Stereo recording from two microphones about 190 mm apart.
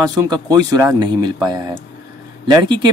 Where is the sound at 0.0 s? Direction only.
20° right (ahead or behind).